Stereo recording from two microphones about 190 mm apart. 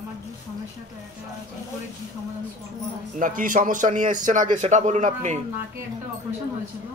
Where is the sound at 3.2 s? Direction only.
45° right (ahead or behind).